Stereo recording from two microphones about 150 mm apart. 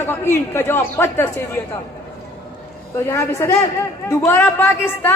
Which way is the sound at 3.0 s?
15° left (ahead or behind).